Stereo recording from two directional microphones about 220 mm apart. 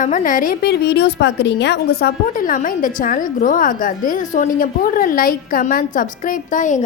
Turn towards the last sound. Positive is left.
turn(degrees=35)  # may be behind; listen again after turning